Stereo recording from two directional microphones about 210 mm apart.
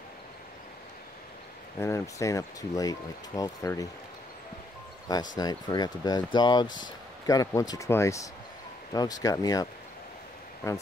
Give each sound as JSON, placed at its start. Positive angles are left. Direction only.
{"t": 1.8, "sound": "speech", "side_deg": 15}
{"t": 5.1, "sound": "speech", "side_deg": 20}